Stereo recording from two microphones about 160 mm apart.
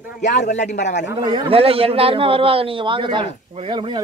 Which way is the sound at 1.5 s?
35° right (ahead or behind).